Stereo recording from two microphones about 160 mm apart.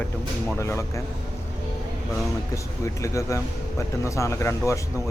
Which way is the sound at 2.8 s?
20° left (ahead or behind).